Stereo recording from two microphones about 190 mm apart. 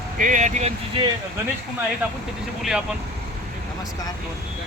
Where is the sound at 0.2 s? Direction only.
40° right (ahead or behind).